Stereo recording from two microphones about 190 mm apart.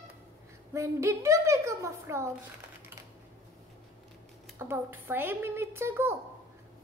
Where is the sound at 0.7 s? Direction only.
15° right (ahead or behind).